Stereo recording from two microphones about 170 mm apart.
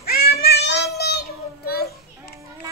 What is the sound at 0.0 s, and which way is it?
Child singing, 65° left (ahead or behind).